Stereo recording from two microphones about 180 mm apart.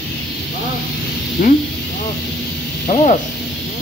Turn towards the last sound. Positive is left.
turn(degrees=35)  # may be behind; listen again after turning